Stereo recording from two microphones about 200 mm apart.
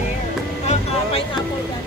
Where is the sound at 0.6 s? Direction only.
30° left (ahead or behind).